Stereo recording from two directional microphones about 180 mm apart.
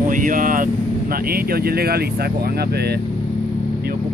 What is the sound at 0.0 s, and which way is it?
Speech, 50° right (ahead or behind).